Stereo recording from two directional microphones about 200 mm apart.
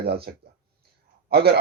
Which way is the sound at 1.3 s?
55° right (ahead or behind).